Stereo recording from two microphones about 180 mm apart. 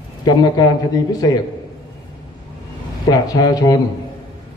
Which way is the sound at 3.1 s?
20° left (ahead or behind).